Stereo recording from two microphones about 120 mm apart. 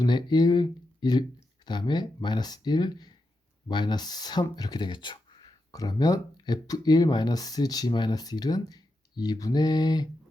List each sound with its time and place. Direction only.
0.0 s speech: 40° left (ahead or behind)